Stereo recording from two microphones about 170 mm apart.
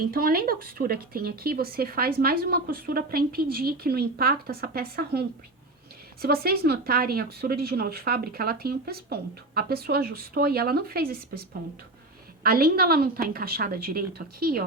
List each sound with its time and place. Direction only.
0.0 s speech: 60° right (ahead or behind)
6.2 s speech: 65° right (ahead or behind)